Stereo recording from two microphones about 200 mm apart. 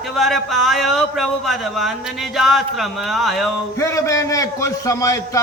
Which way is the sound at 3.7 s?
15° left (ahead or behind).